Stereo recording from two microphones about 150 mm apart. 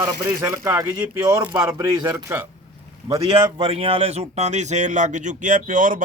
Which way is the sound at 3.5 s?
35° right (ahead or behind).